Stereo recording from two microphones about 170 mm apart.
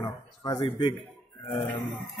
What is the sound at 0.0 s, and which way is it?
Speech, 25° left (ahead or behind).